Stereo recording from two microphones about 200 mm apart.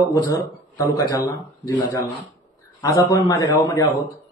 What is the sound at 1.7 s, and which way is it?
A man's voice, 15° left (ahead or behind).